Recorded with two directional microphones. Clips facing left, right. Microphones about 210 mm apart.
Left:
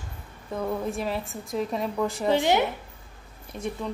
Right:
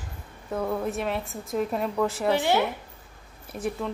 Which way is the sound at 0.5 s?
5° right (ahead or behind).